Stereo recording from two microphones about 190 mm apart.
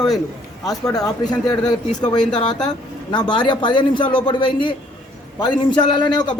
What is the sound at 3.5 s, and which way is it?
A woman's voice, 25° left (ahead or behind).